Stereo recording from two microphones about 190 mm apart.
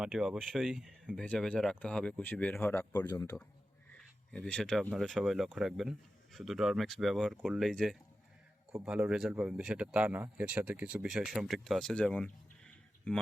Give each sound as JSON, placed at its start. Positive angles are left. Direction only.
{"t": 0.0, "sound": "speech", "side_deg": 0}
{"t": 3.9, "sound": "speech", "side_deg": 5}